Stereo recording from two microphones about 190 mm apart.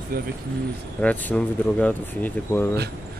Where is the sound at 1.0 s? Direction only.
10° left (ahead or behind).